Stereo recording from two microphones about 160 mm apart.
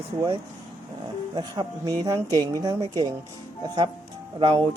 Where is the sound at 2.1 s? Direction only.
20° right (ahead or behind).